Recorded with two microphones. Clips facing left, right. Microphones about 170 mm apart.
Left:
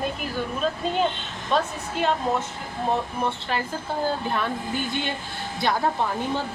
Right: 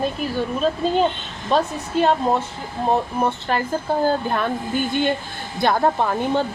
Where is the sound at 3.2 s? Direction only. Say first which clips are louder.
Right 5 dB; 45° right (ahead or behind).